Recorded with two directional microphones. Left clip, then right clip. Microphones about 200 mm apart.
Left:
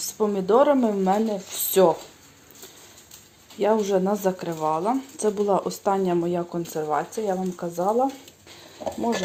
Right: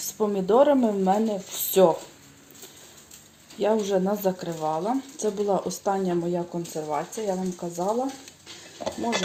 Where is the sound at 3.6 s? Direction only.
Centre (ahead or behind).